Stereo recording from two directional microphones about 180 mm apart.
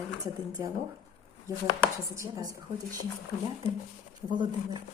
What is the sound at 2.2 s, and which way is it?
Speech, 15° right (ahead or behind).